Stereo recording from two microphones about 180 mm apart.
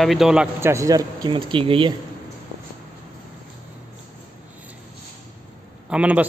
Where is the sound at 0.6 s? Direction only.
15° right (ahead or behind).